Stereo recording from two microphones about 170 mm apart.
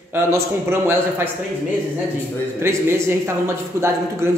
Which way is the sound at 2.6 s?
15° right (ahead or behind).